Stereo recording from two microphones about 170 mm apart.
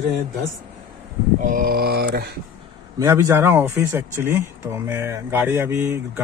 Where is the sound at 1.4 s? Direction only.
60° right (ahead or behind).